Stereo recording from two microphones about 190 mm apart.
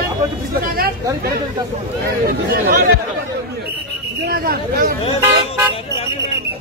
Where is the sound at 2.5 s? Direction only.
50° right (ahead or behind).